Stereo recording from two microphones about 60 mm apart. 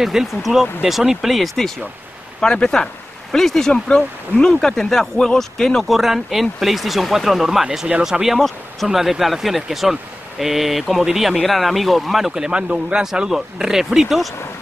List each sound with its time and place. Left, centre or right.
0.0 s speech: centre
2.4 s speech: centre